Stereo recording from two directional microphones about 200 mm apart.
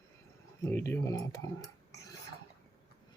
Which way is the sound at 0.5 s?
15° left (ahead or behind).